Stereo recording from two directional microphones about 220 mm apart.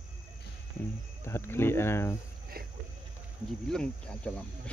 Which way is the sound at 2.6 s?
45° right (ahead or behind).